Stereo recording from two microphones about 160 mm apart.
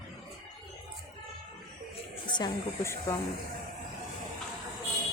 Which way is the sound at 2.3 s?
20° left (ahead or behind).